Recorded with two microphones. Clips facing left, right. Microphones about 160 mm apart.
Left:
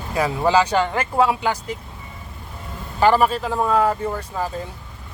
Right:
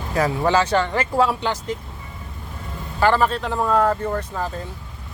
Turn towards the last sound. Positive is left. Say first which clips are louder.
# even
turn(degrees=10)  # may be behind; listen again after turning